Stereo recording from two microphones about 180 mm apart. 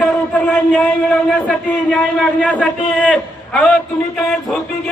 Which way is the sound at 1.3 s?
5° left (ahead or behind).